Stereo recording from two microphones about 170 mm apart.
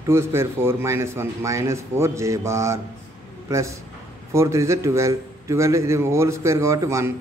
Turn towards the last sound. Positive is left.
turn(degrees=-20)  # may be behind; listen again after turning